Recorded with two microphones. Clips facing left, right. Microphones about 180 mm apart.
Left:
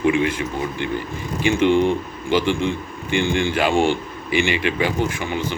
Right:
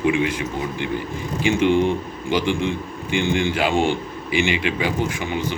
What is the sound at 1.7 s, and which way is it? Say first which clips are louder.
Speech: left 2 dB; 15° left (ahead or behind).